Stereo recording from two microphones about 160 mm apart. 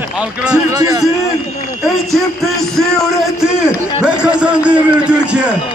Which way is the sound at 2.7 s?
Centre (ahead or behind).